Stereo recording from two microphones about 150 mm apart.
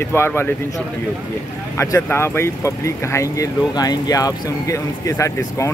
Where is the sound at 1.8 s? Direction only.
20° left (ahead or behind).